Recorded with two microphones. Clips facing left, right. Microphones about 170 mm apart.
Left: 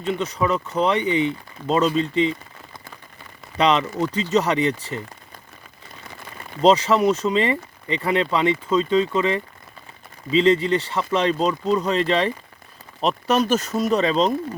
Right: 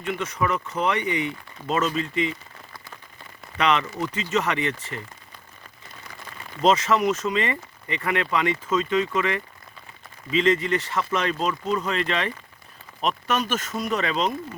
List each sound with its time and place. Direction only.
0.0 s speech: 35° left (ahead or behind)
3.6 s speech: 30° left (ahead or behind)
6.6 s speech: 35° left (ahead or behind)